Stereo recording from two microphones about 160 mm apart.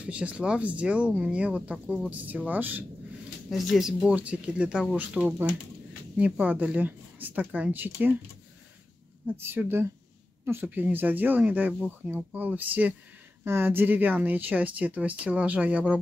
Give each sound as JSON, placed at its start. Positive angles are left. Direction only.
{"t": 0.0, "sound": "speech", "side_deg": -10}
{"t": 9.4, "sound": "speech", "side_deg": -15}